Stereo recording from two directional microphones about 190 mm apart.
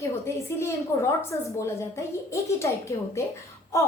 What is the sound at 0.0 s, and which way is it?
A woman's voice, 15° left (ahead or behind).